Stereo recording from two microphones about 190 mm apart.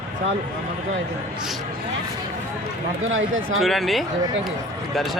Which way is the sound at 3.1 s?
90° right.